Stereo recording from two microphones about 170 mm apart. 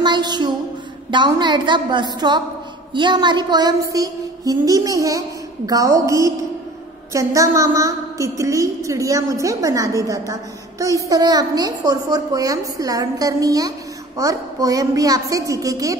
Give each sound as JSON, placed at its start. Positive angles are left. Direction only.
{"t": 0.0, "sound": "music", "side_deg": -25}
{"t": 1.1, "sound": "a woman's voice", "side_deg": -25}